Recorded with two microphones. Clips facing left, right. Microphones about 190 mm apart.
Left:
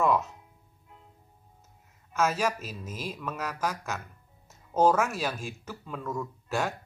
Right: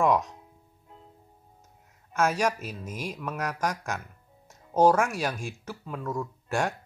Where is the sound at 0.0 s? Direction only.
15° right (ahead or behind).